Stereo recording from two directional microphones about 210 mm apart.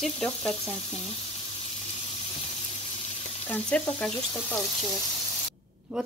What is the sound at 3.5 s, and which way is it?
Speech, 5° left (ahead or behind).